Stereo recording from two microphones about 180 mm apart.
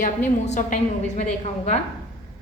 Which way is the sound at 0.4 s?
40° left (ahead or behind).